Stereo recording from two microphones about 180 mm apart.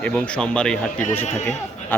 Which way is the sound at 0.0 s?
5° left (ahead or behind).